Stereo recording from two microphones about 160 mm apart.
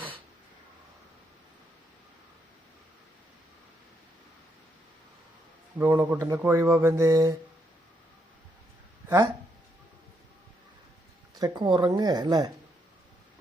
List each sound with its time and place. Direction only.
5.7 s speech: 15° right (ahead or behind)
11.3 s speech: 25° right (ahead or behind)